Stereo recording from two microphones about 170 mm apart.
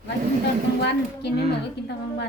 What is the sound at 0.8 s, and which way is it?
Speech, 80° left.